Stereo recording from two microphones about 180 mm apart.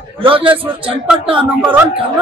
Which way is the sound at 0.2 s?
30° right (ahead or behind).